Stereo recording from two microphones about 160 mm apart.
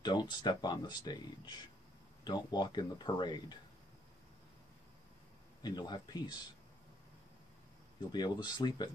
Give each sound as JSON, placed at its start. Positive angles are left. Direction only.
{"t": 0.0, "sound": "speech", "side_deg": 30}
{"t": 5.6, "sound": "speech", "side_deg": 25}
{"t": 8.1, "sound": "speech", "side_deg": 25}